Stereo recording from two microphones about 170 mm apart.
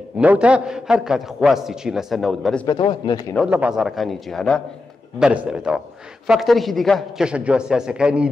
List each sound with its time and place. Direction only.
0.2 s a man's voice: 5° right (ahead or behind)
2.6 s speech: 25° left (ahead or behind)
3.3 s a man's voice: 5° right (ahead or behind)